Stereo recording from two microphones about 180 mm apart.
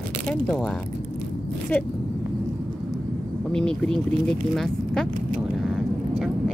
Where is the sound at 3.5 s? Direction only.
5° left (ahead or behind).